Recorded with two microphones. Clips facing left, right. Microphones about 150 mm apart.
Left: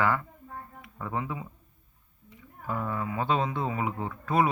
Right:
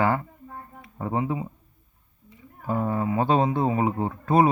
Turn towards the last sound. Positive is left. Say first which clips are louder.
# right 6 dB
turn(degrees=-35)  # may be behind; listen again after turning